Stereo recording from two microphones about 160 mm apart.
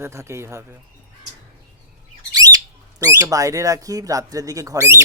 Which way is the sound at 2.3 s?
25° right (ahead or behind).